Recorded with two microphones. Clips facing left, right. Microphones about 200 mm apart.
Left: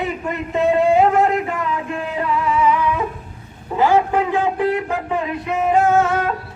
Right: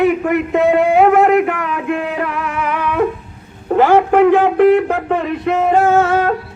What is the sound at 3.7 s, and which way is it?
Speech, 70° right (ahead or behind).